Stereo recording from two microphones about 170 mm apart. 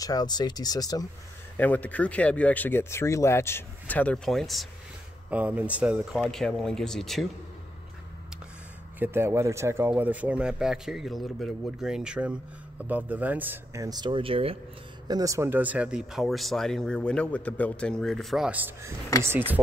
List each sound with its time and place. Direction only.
0.0 s speech: 25° left (ahead or behind)
1.6 s speech: 10° left (ahead or behind)
5.3 s speech: 10° right (ahead or behind)
9.0 s speech: 15° right (ahead or behind)
13.8 s speech: 25° right (ahead or behind)
15.0 s speech: 20° right (ahead or behind)